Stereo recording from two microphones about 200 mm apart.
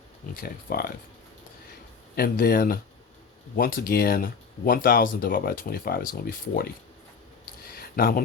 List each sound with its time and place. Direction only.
0.4 s speech: 50° left (ahead or behind)
2.1 s speech: 45° left (ahead or behind)
7.7 s a sound: 50° left (ahead or behind)